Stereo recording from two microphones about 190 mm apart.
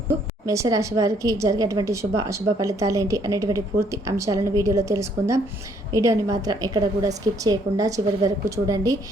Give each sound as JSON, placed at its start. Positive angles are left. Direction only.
{"t": 0.1, "sound": "a woman's voice", "side_deg": -15}